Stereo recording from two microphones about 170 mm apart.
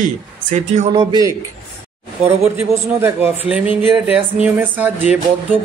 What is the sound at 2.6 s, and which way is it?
Speech, 15° right (ahead or behind).